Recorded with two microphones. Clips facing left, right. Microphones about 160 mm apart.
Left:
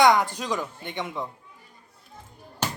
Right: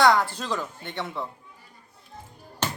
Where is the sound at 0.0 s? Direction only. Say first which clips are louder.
Left 1 dB; 20° left (ahead or behind).